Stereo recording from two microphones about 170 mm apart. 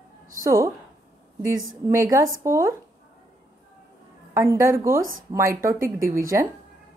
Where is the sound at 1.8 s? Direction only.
15° right (ahead or behind).